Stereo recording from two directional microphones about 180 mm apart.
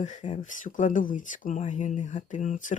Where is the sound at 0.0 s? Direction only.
40° left (ahead or behind).